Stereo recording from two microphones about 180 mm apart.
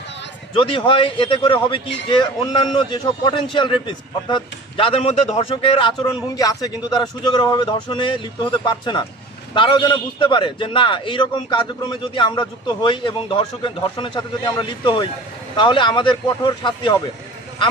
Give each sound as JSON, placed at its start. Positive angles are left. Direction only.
{"t": 0.6, "sound": "a man's voice", "side_deg": 30}